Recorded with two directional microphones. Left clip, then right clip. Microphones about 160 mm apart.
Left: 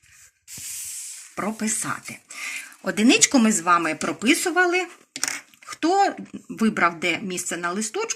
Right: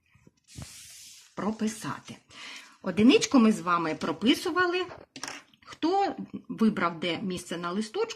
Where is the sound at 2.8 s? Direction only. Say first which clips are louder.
Left 4 dB; 45° right (ahead or behind).